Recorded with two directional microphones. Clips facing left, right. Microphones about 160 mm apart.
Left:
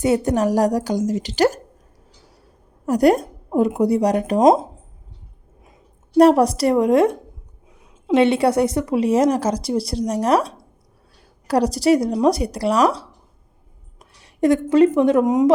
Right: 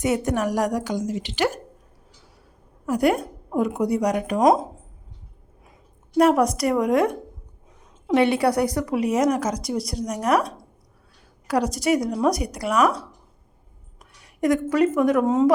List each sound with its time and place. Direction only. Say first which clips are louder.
0.0 s a woman's voice: left 5 dB; 30° left (ahead or behind)
2.8 s a woman's voice: left 5 dB; 40° left (ahead or behind)
6.1 s a woman's voice: left 5 dB; 35° left (ahead or behind)
14.0 s a sound: left 5 dB; 30° left (ahead or behind)
14.8 s a woman's voice: left 4 dB; 25° left (ahead or behind)
15.2 s speech: left 3 dB; 15° left (ahead or behind)